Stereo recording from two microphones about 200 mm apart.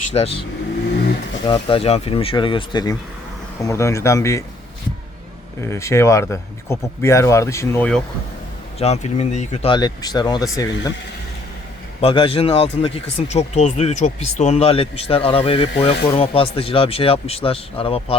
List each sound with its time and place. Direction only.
0.1 s speech: 30° left (ahead or behind)
1.5 s speech: 25° left (ahead or behind)
5.5 s speech: 15° left (ahead or behind)
8.8 s speech: 30° left (ahead or behind)
11.9 s speech: 30° left (ahead or behind)